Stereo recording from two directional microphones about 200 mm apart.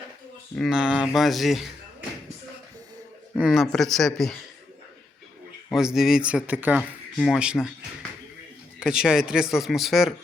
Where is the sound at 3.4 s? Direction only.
Centre (ahead or behind).